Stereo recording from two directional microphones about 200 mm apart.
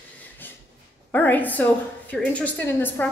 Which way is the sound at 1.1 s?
10° left (ahead or behind).